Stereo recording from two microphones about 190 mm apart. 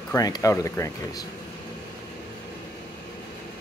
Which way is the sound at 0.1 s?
20° left (ahead or behind).